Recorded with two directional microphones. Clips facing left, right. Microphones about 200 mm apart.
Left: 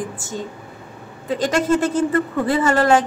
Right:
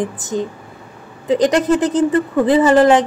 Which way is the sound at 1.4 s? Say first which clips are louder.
Right 3 dB; 15° right (ahead or behind).